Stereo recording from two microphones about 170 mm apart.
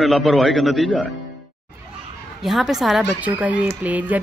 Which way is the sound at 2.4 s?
Centre (ahead or behind).